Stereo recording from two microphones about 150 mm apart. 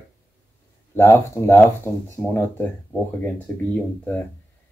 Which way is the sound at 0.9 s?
15° left (ahead or behind).